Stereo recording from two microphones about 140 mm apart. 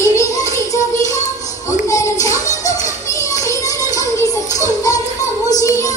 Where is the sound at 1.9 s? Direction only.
25° left (ahead or behind).